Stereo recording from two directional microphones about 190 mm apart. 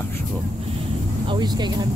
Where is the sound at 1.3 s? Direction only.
20° right (ahead or behind).